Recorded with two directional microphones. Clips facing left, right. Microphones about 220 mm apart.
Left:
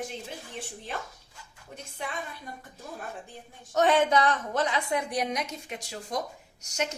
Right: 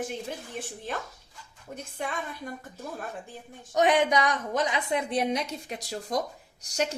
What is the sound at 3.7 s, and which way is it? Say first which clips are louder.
A woman's voice: even; 15° right (ahead or behind).